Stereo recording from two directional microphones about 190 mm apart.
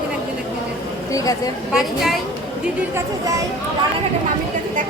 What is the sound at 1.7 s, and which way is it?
Speech, centre (ahead or behind).